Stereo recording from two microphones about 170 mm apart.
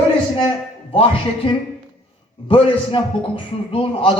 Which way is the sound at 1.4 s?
30° left (ahead or behind).